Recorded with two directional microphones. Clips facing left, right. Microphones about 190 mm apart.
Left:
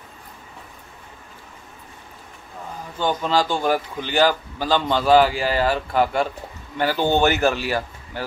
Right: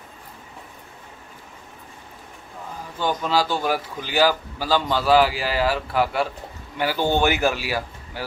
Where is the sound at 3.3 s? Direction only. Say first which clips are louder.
Left 2 dB; 5° right (ahead or behind).